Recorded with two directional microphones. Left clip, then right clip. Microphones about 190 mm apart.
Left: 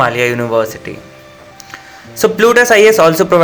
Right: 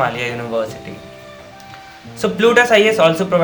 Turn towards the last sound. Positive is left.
turn(degrees=40)  # may be behind; listen again after turning